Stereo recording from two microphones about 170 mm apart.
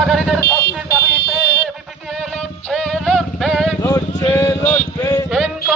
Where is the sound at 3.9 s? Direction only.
15° left (ahead or behind).